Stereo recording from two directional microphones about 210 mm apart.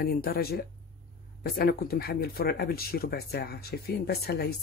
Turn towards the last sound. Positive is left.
turn(degrees=50)  # may be behind; listen again after turning